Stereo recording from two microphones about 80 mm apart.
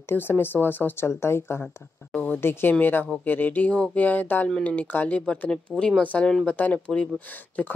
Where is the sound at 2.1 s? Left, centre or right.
Centre.